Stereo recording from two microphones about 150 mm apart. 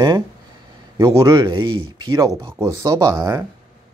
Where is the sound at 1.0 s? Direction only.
30° right (ahead or behind).